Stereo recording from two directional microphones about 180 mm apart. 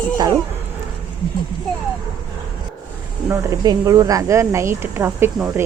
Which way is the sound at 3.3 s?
20° right (ahead or behind).